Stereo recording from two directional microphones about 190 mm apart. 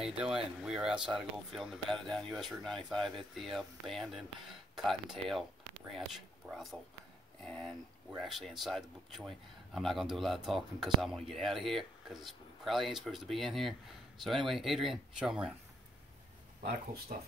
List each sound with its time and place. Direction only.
0.0 s speech: 5° right (ahead or behind)
17.1 s speech: 45° right (ahead or behind)